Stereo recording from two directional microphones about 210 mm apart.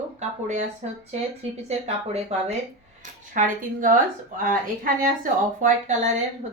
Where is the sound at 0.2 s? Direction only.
35° right (ahead or behind).